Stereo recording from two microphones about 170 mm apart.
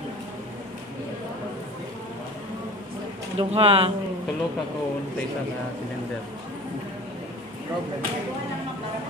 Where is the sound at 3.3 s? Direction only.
35° right (ahead or behind).